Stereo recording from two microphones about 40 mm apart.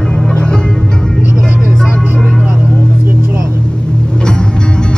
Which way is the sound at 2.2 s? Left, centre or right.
Centre.